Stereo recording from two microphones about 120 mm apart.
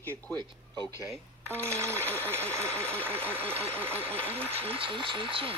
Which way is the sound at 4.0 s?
55° right (ahead or behind).